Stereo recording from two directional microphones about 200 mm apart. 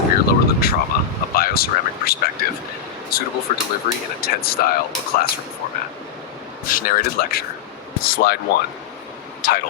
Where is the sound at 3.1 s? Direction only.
50° left (ahead or behind).